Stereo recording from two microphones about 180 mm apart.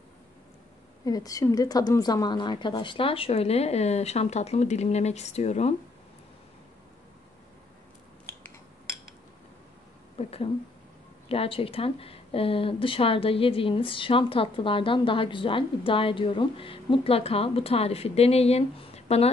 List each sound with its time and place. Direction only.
1.0 s speech: 20° left (ahead or behind); by 5.8 s 35° left (ahead or behind)
10.1 s speech: 35° left (ahead or behind)